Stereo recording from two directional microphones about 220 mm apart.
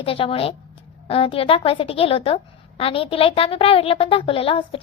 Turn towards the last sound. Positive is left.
turn(degrees=25)  # may be behind; listen again after turning